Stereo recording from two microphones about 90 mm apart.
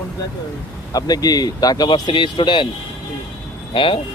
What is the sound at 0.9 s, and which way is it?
Speech, 45° left (ahead or behind).